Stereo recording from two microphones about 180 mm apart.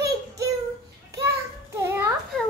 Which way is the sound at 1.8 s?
10° right (ahead or behind).